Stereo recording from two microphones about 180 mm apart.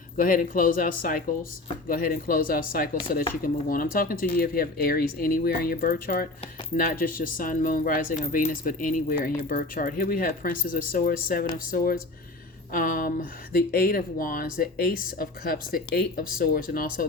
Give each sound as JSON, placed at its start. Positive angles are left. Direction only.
{"t": 0.2, "sound": "speech", "side_deg": 50}